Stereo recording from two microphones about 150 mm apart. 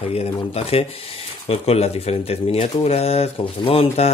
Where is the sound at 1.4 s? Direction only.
45° left (ahead or behind).